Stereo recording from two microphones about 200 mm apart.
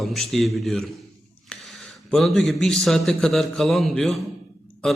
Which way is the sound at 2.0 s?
Centre (ahead or behind).